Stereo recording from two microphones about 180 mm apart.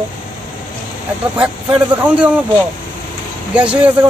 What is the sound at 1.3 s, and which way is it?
Speech, 10° right (ahead or behind).